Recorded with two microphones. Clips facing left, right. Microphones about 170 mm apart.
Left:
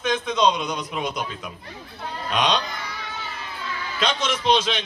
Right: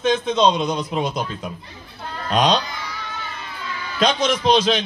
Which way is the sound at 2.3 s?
35° right (ahead or behind).